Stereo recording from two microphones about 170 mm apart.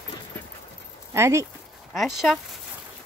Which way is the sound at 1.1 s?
15° right (ahead or behind).